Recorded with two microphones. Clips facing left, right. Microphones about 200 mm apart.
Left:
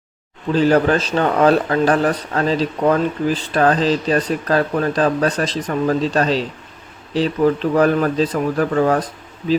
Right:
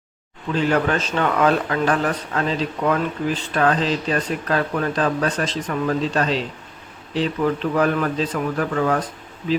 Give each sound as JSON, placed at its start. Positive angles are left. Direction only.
{"t": 0.5, "sound": "a man's voice", "side_deg": 35}